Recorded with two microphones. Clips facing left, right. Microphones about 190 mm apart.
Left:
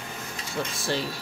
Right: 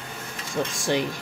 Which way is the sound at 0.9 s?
15° right (ahead or behind).